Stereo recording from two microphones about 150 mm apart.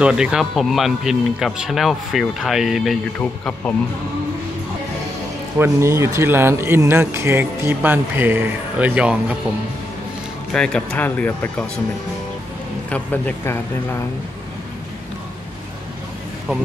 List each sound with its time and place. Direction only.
0.0 s speech: 5° right (ahead or behind)
3.2 s speech: 10° left (ahead or behind)
5.6 s speech: 20° right (ahead or behind)
10.5 s speech: 5° left (ahead or behind)
12.9 s speech: 10° left (ahead or behind)